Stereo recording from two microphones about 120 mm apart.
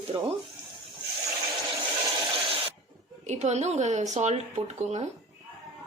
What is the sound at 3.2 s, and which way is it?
A woman's voice, 70° right (ahead or behind).